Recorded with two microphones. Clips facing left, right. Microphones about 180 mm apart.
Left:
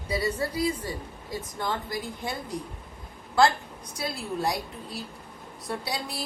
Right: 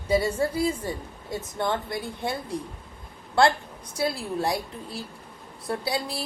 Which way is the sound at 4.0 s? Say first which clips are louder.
Right 4 dB; 30° right (ahead or behind).